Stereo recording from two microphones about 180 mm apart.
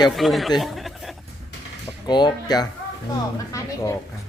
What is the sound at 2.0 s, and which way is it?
Speech, 25° left (ahead or behind).